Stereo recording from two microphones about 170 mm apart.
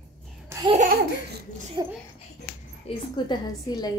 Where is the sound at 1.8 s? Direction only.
25° right (ahead or behind).